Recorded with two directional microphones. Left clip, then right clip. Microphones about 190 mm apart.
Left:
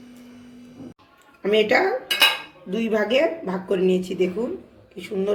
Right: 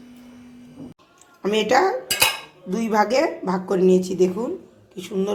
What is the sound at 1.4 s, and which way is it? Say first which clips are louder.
Speech: even; 35° right (ahead or behind).